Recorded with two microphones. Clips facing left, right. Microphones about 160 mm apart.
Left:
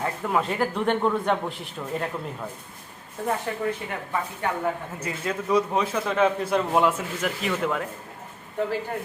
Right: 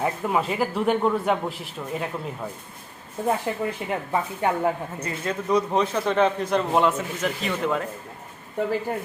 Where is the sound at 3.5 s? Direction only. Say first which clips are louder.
Right 2 dB; 20° right (ahead or behind).